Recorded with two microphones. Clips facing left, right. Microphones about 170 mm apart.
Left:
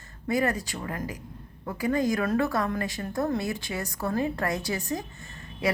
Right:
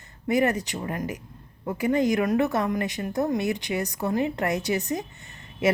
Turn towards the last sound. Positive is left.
turn(degrees=-20)  # may be behind; listen again after turning